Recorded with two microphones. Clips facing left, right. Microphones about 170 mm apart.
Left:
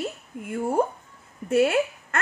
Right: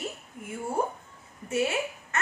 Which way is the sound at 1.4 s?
55° left (ahead or behind).